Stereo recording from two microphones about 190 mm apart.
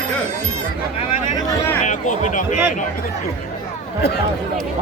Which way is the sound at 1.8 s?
40° left (ahead or behind).